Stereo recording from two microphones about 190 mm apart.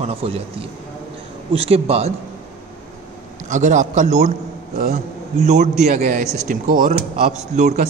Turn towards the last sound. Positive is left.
turn(degrees=-35)  # may be behind; listen again after turning